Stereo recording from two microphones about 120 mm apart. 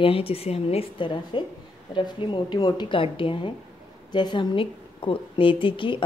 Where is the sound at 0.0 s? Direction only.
50° left (ahead or behind).